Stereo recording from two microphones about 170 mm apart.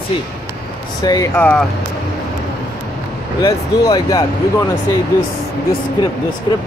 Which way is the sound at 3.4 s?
25° left (ahead or behind).